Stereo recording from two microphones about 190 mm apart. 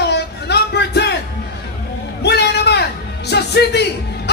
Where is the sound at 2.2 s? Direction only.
60° left (ahead or behind).